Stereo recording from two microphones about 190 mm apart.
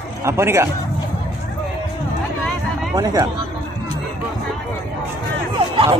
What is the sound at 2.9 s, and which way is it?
Speech, 20° right (ahead or behind).